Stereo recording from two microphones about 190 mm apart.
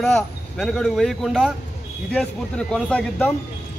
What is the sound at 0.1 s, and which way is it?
Speech, 5° left (ahead or behind).